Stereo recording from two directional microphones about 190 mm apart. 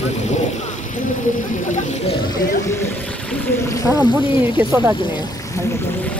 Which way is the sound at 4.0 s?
25° left (ahead or behind).